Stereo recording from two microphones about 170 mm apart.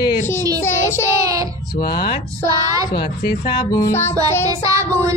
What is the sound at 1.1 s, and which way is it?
Speech, 20° right (ahead or behind).